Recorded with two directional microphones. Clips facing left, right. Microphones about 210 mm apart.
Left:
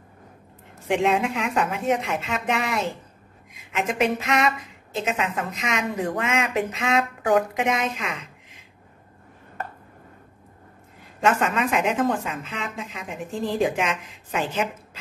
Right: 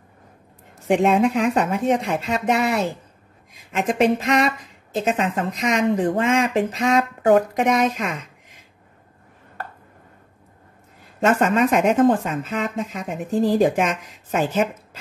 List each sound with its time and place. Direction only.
0.8 s a woman's voice: 40° right (ahead or behind)
11.2 s speech: 40° right (ahead or behind)